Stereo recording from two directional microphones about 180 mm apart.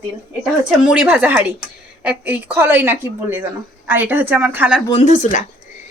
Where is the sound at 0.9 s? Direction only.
5° right (ahead or behind).